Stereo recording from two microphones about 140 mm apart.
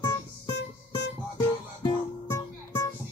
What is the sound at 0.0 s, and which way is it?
Music, 25° left (ahead or behind).